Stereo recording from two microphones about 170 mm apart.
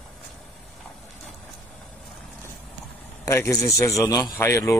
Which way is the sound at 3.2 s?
20° left (ahead or behind).